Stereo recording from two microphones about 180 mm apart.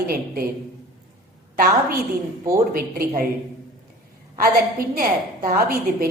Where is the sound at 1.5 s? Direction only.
55° right (ahead or behind).